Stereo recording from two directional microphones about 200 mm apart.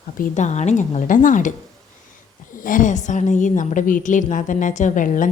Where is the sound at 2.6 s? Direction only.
40° left (ahead or behind).